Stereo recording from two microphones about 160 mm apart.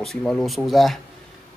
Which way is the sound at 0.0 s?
Centre (ahead or behind).